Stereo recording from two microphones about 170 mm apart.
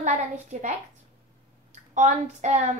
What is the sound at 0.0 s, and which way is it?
Speech, 45° right (ahead or behind).